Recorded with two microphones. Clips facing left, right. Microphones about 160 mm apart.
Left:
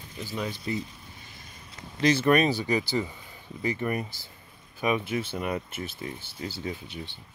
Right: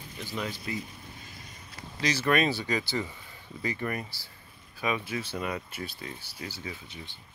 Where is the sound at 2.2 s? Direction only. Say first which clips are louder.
Left 4 dB; 20° left (ahead or behind).